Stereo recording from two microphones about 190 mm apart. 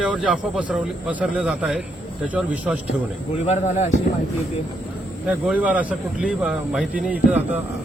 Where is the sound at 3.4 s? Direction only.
35° left (ahead or behind).